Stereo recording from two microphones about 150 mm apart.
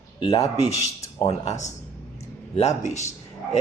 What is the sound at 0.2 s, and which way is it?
Speech, 40° left (ahead or behind).